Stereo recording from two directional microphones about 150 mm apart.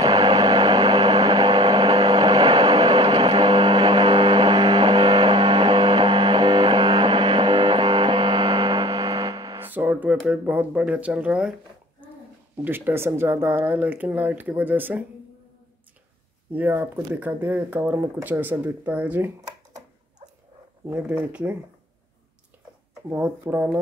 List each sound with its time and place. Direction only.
0.0 s a sound: 25° right (ahead or behind)
9.6 s speech: 10° right (ahead or behind)
12.6 s speech: 15° right (ahead or behind)
16.5 s speech: 15° right (ahead or behind)
20.9 s speech: 10° right (ahead or behind)
23.0 s speech: 10° right (ahead or behind)